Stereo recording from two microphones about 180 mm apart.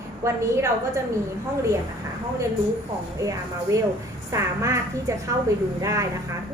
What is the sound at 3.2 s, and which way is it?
A woman's voice, 20° right (ahead or behind).